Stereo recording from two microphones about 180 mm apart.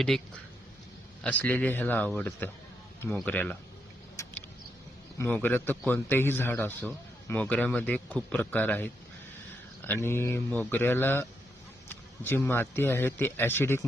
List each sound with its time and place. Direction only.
1.2 s a man's voice: 10° left (ahead or behind)
5.1 s a man's voice: 10° left (ahead or behind)